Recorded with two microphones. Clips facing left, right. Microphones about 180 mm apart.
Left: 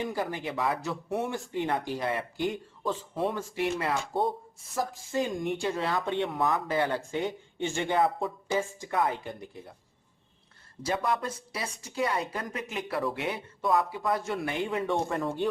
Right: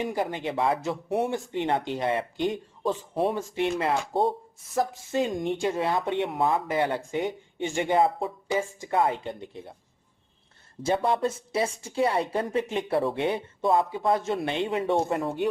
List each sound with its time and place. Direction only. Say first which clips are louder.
0.0 s a woman's voice: right 3 dB; 20° right (ahead or behind)
7.9 s a woman's voice: right 3 dB; 25° right (ahead or behind)
10.8 s a woman's voice: right 5 dB; 30° right (ahead or behind)